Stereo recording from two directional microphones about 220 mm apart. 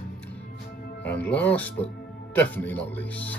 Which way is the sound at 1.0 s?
5° left (ahead or behind).